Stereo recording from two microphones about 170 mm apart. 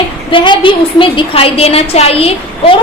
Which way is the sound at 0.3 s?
30° left (ahead or behind).